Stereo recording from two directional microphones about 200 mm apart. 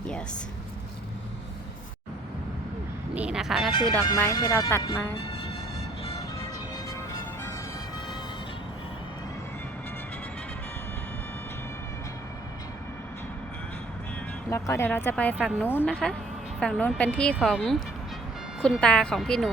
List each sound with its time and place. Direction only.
3.2 s speech: 5° right (ahead or behind)
4.0 s speech: 15° left (ahead or behind)
14.5 s speech: 15° left (ahead or behind)
15.4 s speech: 5° right (ahead or behind)
15.6 s speech: 10° left (ahead or behind)